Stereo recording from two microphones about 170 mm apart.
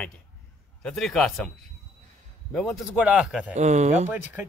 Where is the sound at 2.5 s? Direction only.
Centre (ahead or behind).